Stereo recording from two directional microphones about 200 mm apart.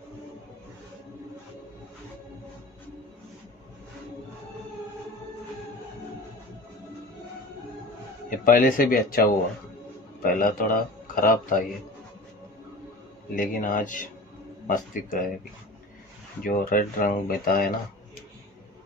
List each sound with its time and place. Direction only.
8.3 s speech: 45° left (ahead or behind)
13.3 s a man's voice: 45° left (ahead or behind)
16.4 s speech: 45° left (ahead or behind)